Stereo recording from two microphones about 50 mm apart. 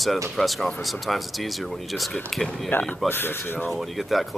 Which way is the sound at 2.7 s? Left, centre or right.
Left.